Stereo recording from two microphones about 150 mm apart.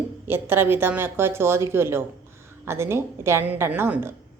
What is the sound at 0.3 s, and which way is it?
A woman's voice, 15° right (ahead or behind).